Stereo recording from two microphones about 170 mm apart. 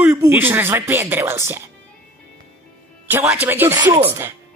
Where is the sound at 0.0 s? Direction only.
15° right (ahead or behind).